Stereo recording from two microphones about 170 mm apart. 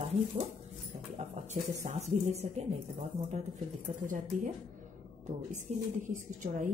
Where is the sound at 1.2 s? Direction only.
45° right (ahead or behind).